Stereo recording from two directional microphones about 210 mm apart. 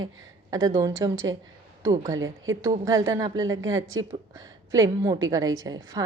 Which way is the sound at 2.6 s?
15° right (ahead or behind).